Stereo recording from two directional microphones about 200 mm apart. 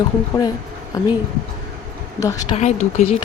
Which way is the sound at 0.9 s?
20° left (ahead or behind).